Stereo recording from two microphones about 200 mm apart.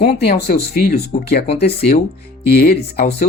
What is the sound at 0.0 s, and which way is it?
Speech, 55° left (ahead or behind).